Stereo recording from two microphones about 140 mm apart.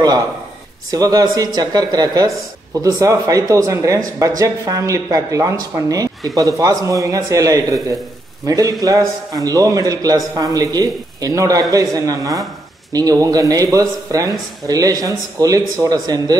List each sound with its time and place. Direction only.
0.9 s speech: 25° right (ahead or behind)